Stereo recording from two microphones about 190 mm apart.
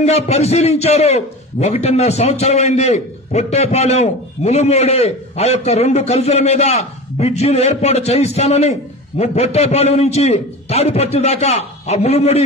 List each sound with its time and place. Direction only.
0.0 s a man's voice: 35° left (ahead or behind)